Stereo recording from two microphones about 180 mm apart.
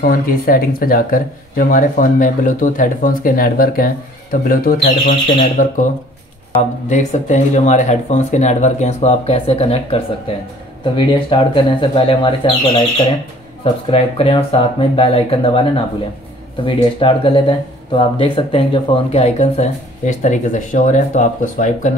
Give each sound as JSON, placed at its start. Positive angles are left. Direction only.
{"t": 0.0, "sound": "speech", "side_deg": 55}
{"t": 6.9, "sound": "speech", "side_deg": 40}
{"t": 13.8, "sound": "speech", "side_deg": 35}